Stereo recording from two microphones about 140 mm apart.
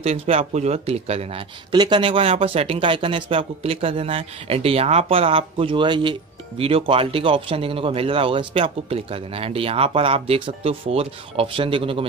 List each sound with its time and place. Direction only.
0.0 s speech: 50° right (ahead or behind)
1.7 s speech: 35° right (ahead or behind)